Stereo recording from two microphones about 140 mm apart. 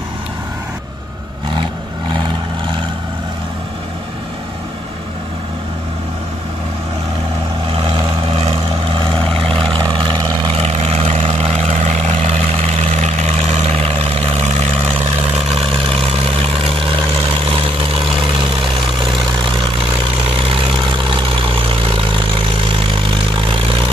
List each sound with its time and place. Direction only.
2.1 s vehicle: 35° right (ahead or behind)
7.8 s vehicle: 40° right (ahead or behind)
9.7 s vehicle: 35° right (ahead or behind)
10.5 s vehicle: 45° right (ahead or behind)
16.3 s vehicle: 45° right (ahead or behind)
21.1 s vehicle: 40° right (ahead or behind)